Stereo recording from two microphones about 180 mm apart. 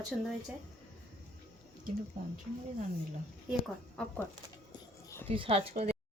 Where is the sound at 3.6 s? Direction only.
5° left (ahead or behind).